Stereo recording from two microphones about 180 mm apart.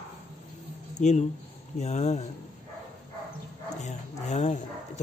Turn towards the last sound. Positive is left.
turn(degrees=40)  # may be behind; listen again after turning